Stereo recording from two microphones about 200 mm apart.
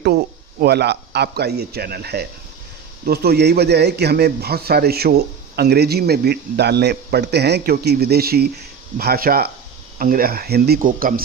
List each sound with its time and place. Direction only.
0.6 s a man's voice: 55° right (ahead or behind)